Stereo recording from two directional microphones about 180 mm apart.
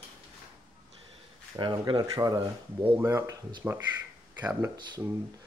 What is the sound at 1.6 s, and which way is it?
Speech, 25° right (ahead or behind).